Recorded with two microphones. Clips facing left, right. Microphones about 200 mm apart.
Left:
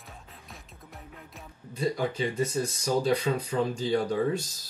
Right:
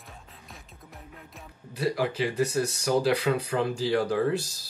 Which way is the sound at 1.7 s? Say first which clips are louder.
Right 1 dB; 85° right.